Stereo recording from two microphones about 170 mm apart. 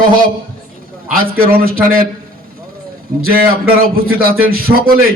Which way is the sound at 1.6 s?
60° right (ahead or behind).